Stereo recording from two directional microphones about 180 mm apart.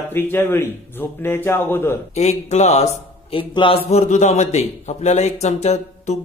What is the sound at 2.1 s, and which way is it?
A man's voice, 40° left (ahead or behind).